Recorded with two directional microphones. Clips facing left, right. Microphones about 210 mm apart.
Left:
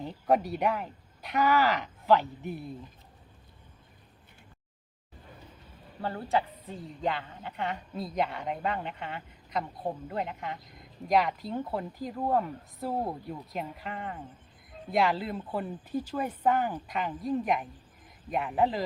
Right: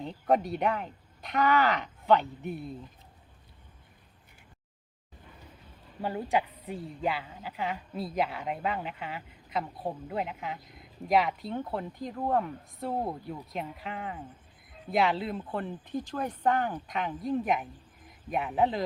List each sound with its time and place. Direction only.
0.0 s a woman's voice: 5° left (ahead or behind)
6.0 s a woman's voice: 15° right (ahead or behind)